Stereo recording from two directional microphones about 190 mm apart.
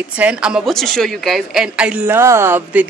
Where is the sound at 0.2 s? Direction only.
5° right (ahead or behind).